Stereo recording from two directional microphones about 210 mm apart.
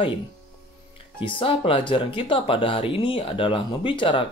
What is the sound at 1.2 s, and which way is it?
Speech, 25° left (ahead or behind).